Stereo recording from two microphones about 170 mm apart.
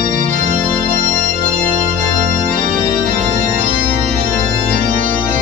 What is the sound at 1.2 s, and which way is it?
Music, 50° right (ahead or behind).